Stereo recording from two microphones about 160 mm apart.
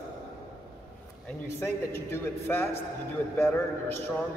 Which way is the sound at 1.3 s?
15° left (ahead or behind).